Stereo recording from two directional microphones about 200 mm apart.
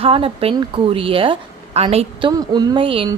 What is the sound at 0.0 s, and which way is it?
Speech, 30° right (ahead or behind).